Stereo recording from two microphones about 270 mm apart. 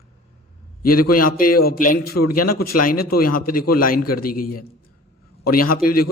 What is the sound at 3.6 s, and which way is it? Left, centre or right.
Speech, left.